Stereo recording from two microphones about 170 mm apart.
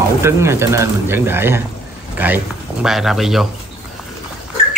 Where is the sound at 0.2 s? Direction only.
15° right (ahead or behind).